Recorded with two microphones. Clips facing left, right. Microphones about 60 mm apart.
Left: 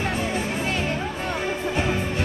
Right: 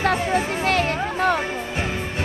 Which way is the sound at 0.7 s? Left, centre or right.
Right.